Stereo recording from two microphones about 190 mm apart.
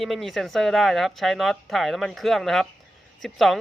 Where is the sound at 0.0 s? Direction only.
Centre (ahead or behind).